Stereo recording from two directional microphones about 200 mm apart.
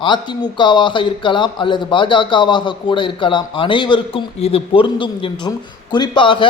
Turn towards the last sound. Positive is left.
turn(degrees=25)  # may be behind; listen again after turning